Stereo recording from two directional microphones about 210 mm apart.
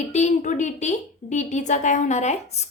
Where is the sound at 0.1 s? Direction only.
35° left (ahead or behind).